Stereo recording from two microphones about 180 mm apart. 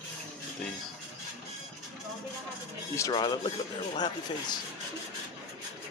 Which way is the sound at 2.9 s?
20° left (ahead or behind).